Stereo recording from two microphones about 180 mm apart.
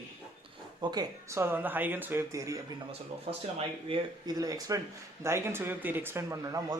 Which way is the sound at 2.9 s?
35° right (ahead or behind).